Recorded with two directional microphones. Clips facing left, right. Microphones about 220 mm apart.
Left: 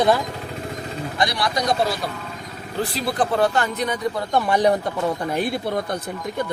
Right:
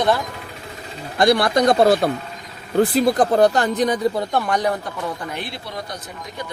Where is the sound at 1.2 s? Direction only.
55° right (ahead or behind); by 4.0 s 35° right (ahead or behind).